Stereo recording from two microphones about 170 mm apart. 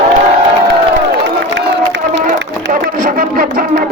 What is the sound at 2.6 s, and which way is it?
Music, 55° right (ahead or behind).